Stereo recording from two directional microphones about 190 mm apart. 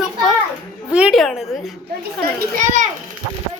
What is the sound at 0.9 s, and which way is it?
Speech, 5° right (ahead or behind).